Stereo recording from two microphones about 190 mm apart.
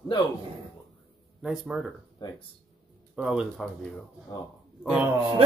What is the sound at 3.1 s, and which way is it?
Speech, 5° right (ahead or behind).